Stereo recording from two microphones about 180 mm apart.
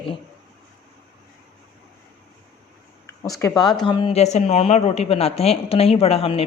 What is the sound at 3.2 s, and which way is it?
Speech, 20° left (ahead or behind).